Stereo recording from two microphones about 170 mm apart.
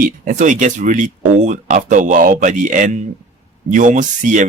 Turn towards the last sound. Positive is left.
turn(degrees=-50)  # may be behind; listen again after turning